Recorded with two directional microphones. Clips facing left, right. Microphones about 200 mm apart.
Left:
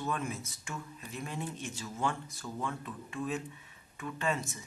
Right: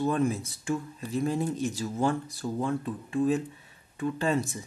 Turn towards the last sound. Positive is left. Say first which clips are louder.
# right 7 dB
turn(degrees=-35)  # may be behind; listen again after turning